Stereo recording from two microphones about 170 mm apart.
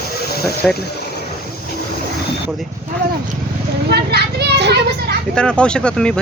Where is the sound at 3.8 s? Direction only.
70° right (ahead or behind).